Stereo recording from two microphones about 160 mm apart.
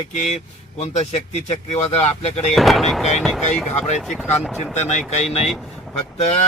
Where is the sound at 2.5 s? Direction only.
Centre (ahead or behind).